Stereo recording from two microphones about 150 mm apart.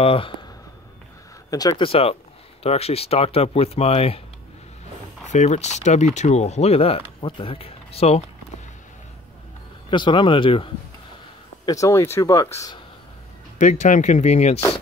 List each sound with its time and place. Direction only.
0.0 s speech: 35° left (ahead or behind)
1.5 s speech: 25° left (ahead or behind)
1.8 s speech: 40° left (ahead or behind)
5.3 s speech: 50° left (ahead or behind)
9.8 s speech: 30° left (ahead or behind)
11.6 s speech: 20° left (ahead or behind)
13.6 s speech: 55° left (ahead or behind)